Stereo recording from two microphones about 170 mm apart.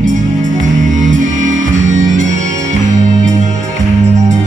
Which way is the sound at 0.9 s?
50° right (ahead or behind).